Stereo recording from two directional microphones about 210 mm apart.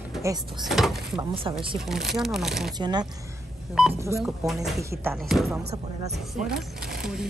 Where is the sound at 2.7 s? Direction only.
20° right (ahead or behind).